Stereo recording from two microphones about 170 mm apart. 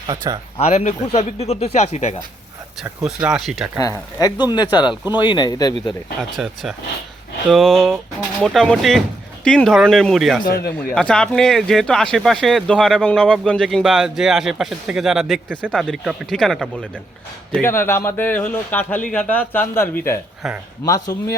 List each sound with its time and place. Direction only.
0.1 s speech: 20° right (ahead or behind)
0.5 s speech: 40° left (ahead or behind)
2.8 s speech: 5° right (ahead or behind)
3.8 s speech: 20° left (ahead or behind)
6.3 s speech: centre (ahead or behind)
17.6 s speech: 15° left (ahead or behind)